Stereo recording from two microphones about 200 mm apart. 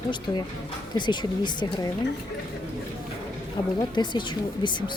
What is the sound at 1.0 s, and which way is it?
Speech, 20° left (ahead or behind).